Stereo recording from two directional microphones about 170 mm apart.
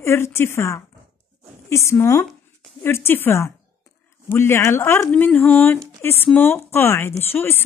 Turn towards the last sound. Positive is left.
turn(degrees=15)  # may be behind; listen again after turning